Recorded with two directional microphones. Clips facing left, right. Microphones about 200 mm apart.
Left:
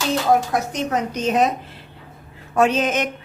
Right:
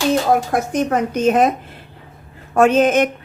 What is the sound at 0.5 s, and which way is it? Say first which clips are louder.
A woman's voice: right 4 dB; 50° right (ahead or behind).